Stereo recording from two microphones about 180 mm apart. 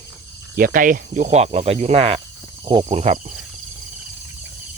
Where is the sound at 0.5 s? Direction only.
50° right (ahead or behind); by 2.2 s 30° right (ahead or behind).